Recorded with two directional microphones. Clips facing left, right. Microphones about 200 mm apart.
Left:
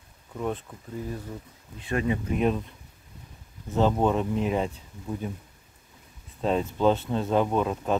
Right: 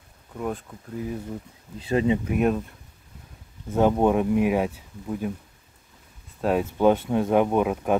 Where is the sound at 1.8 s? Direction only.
25° right (ahead or behind).